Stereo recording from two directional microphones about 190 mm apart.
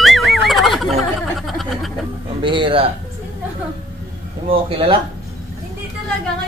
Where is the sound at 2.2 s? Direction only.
25° right (ahead or behind).